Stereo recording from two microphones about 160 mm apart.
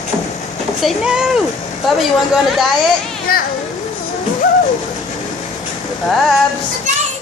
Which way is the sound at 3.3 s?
65° left (ahead or behind).